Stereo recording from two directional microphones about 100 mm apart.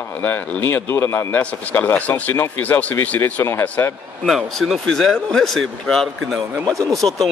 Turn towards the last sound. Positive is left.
turn(degrees=0)  # may be behind; listen again after turning